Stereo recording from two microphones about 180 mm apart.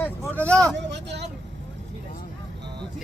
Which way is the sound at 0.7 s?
70° right (ahead or behind).